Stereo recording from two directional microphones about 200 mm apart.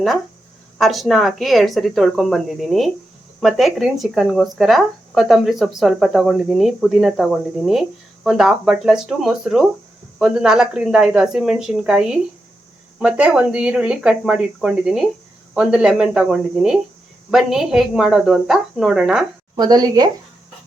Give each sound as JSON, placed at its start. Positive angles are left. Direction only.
{"t": 0.8, "sound": "speech", "side_deg": 0}
{"t": 19.5, "sound": "speech", "side_deg": -20}